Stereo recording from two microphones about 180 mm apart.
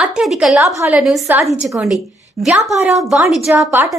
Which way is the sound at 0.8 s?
10° right (ahead or behind).